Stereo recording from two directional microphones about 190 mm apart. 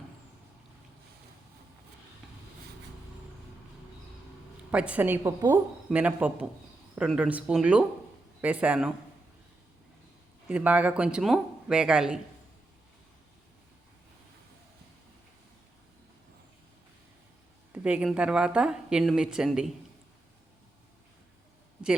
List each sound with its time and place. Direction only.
4.7 s a man's voice: 5° right (ahead or behind)
10.5 s speech: 10° right (ahead or behind)
17.7 s speech: 5° right (ahead or behind)